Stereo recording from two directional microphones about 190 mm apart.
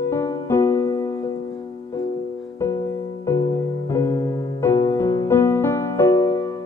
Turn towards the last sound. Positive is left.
turn(degrees=15)  # may be behind; listen again after turning